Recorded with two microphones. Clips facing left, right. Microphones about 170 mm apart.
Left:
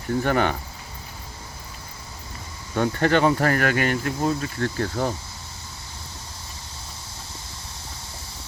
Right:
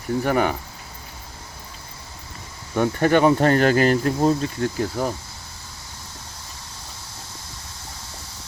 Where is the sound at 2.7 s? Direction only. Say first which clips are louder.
Right 2 dB; 15° right (ahead or behind); by 4.4 s 35° right (ahead or behind).